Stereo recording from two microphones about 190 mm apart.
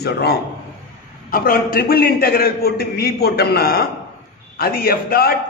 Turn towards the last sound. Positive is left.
turn(degrees=55)  # may be behind; listen again after turning